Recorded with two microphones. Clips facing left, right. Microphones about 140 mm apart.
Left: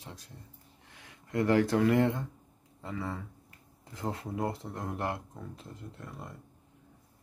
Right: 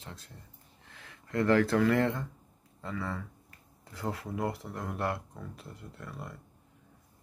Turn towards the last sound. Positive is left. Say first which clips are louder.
# right 1 dB
turn(degrees=20)  # may be behind; listen again after turning